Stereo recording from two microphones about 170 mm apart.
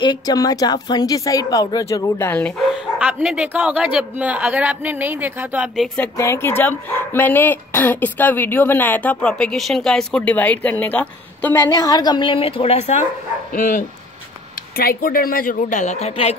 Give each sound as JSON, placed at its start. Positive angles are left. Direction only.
{"t": 0.0, "sound": "speech", "side_deg": 25}
{"t": 3.0, "sound": "speech", "side_deg": -10}
{"t": 6.1, "sound": "speech", "side_deg": 15}
{"t": 13.5, "sound": "speech", "side_deg": 50}